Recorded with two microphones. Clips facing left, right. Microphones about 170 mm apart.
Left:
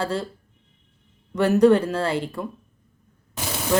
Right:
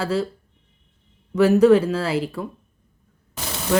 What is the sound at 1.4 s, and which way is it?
Speech, 5° right (ahead or behind).